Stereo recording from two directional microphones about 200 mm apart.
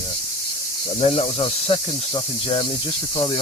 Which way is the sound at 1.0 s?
30° left (ahead or behind).